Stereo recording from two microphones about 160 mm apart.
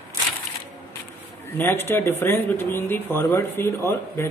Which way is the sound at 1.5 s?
15° left (ahead or behind).